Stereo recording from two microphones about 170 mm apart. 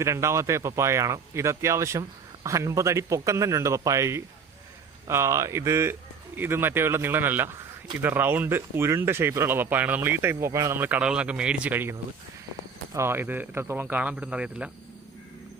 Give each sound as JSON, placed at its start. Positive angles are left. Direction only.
{"t": 0.0, "sound": "speech", "side_deg": -15}